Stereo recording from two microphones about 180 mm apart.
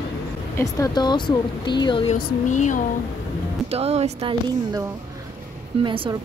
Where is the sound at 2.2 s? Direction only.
50° left (ahead or behind).